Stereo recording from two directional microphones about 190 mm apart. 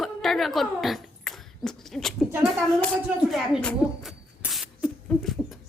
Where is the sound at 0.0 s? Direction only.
Centre (ahead or behind).